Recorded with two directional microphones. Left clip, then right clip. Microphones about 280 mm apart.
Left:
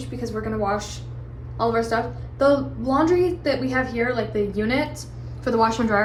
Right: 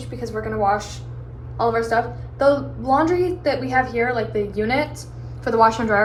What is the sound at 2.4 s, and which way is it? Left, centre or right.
Speech, left.